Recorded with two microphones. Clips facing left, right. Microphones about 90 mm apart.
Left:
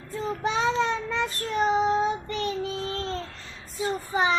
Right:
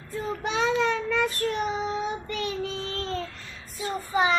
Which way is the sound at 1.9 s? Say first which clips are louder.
Left 5 dB; 35° left (ahead or behind).